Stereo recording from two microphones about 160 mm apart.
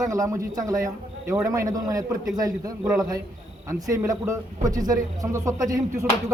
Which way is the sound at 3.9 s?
20° right (ahead or behind).